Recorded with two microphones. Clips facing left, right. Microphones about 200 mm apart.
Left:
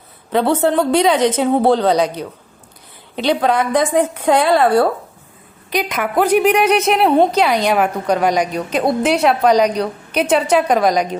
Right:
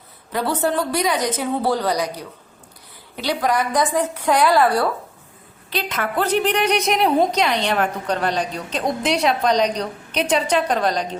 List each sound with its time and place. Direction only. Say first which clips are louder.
0.5 s a woman's voice: left 6 dB; 25° left (ahead or behind)
5.7 s a woman's voice: left 6 dB; 15° left (ahead or behind)